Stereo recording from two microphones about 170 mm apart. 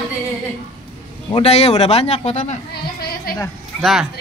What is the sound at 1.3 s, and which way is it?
Speech, 35° left (ahead or behind).